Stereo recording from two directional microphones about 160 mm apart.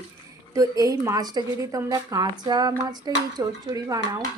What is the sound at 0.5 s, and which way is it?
A woman's voice, 20° right (ahead or behind).